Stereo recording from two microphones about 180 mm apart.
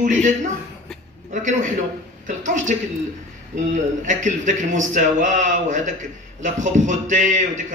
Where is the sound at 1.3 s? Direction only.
45° right (ahead or behind).